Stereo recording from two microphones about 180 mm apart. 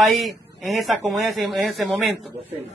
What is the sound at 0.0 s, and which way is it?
Speech, centre (ahead or behind).